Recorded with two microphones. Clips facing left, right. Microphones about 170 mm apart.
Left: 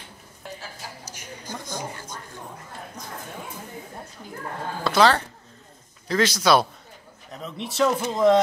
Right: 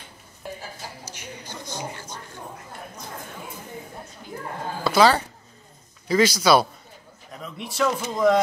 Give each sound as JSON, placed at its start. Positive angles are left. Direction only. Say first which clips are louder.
{"t": 1.1, "sound": "a sound", "louder": "left 1 dB", "side_deg": 45}
{"t": 4.8, "sound": "a man's voice", "louder": "right 1 dB", "side_deg": -5}
{"t": 8.1, "sound": "speech", "louder": "left 1 dB", "side_deg": 25}